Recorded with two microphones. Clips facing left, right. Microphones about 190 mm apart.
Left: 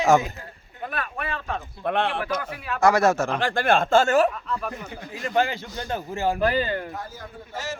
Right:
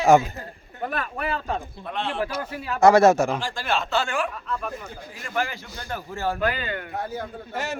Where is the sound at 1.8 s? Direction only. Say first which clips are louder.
Left 6 dB; 60° left (ahead or behind).